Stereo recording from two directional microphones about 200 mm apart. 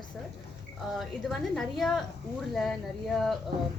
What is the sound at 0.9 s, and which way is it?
Speech, centre (ahead or behind).